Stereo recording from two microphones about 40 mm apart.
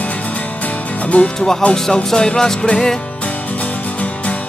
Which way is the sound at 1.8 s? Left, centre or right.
Centre.